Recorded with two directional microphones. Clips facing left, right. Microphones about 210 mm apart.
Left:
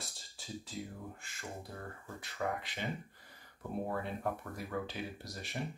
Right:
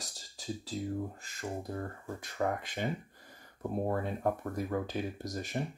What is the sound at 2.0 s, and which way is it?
Speech, 45° right (ahead or behind).